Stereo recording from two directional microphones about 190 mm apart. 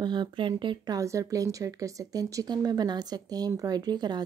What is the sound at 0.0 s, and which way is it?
Speech, 25° right (ahead or behind).